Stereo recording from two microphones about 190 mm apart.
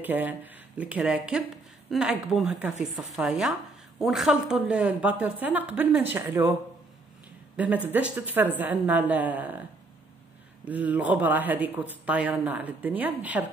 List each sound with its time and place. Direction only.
0.0 s speech: 10° right (ahead or behind)
7.5 s speech: 10° right (ahead or behind)
10.6 s speech: 10° right (ahead or behind)